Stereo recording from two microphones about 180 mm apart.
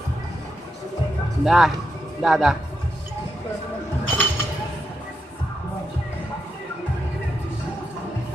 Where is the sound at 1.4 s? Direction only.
5° right (ahead or behind).